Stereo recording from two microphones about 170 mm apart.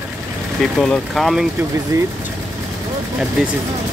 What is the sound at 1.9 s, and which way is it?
Speech, 20° right (ahead or behind).